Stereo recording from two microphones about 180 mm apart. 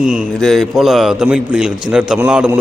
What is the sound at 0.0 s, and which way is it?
A man's voice, 5° right (ahead or behind).